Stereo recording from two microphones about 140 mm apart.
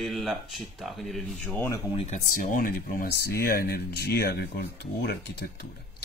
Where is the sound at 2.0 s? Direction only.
65° left (ahead or behind); by 4.0 s 90° left.